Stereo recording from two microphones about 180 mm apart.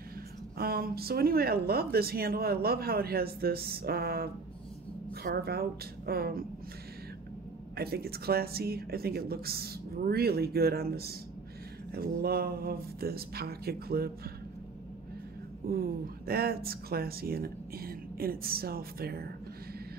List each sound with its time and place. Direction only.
0.6 s speech: 55° right (ahead or behind)
7.7 s speech: 60° right (ahead or behind)
15.6 s speech: 55° right (ahead or behind)